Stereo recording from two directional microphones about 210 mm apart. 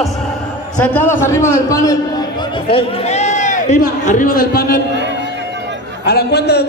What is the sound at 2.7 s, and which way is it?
A man's voice, 30° left (ahead or behind).